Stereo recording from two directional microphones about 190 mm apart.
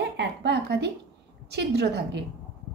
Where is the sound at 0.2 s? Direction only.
65° right (ahead or behind).